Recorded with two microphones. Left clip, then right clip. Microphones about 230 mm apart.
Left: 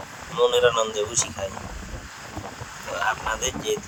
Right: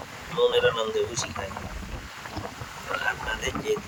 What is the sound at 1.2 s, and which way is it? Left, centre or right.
Speech, centre.